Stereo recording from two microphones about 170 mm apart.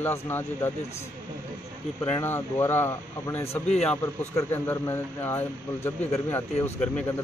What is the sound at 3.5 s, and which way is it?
Speech, 40° left (ahead or behind).